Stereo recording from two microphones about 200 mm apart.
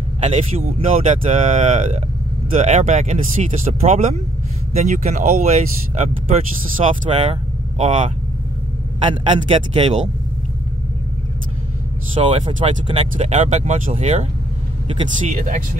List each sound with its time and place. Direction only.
0.2 s speech: 30° right (ahead or behind)
9.0 s a man's voice: 25° right (ahead or behind)
12.2 s a man's voice: 25° right (ahead or behind)
15.4 s speech: 40° right (ahead or behind)